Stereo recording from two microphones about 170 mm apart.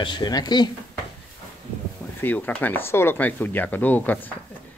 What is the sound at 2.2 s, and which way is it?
Speech, 10° left (ahead or behind).